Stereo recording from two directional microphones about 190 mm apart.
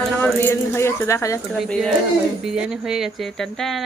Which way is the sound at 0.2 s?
10° left (ahead or behind).